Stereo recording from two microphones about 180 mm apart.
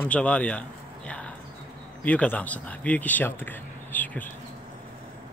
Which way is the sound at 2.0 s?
10° left (ahead or behind).